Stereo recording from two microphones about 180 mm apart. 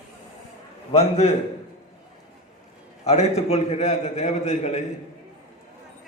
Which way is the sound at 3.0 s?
35° left (ahead or behind).